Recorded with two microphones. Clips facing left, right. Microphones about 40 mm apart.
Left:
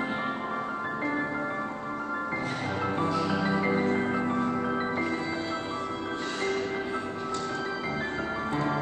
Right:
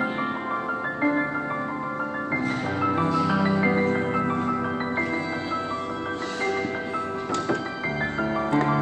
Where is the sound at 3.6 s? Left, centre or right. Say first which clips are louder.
Right 4 dB; right.